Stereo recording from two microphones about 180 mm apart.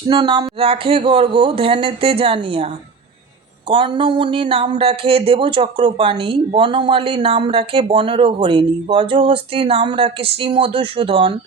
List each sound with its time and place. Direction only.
0.1 s speech: 25° right (ahead or behind)
3.7 s speech: 30° right (ahead or behind)